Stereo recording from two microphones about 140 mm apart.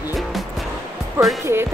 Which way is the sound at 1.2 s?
15° right (ahead or behind).